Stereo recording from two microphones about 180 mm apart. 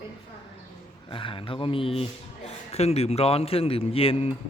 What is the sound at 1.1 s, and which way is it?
Speech, 30° left (ahead or behind).